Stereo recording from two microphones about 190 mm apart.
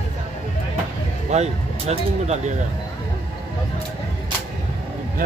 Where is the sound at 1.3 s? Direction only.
35° right (ahead or behind).